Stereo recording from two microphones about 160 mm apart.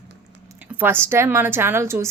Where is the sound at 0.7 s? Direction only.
10° right (ahead or behind).